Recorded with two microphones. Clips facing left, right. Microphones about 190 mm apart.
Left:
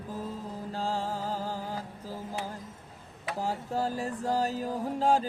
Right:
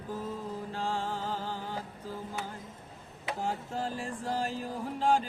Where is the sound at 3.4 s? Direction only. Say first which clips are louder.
Left 4 dB; 40° left (ahead or behind).